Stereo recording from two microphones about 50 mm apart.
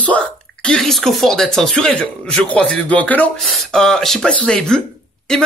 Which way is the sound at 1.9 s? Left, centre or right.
Left.